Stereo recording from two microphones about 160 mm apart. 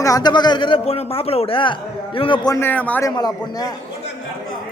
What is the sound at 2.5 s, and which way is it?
Speech, 10° left (ahead or behind).